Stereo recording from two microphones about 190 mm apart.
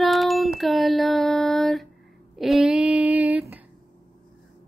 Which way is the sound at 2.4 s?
Centre (ahead or behind).